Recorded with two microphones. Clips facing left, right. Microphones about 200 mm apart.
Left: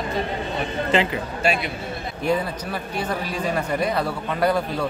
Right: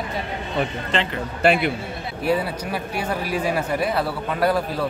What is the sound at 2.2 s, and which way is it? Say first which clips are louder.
Speech: right 1 dB; 10° right (ahead or behind).